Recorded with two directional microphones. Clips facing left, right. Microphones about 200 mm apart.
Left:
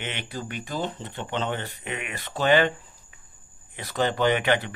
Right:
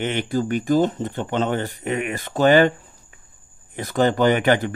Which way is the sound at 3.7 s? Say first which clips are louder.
Right 7 dB; 45° right (ahead or behind).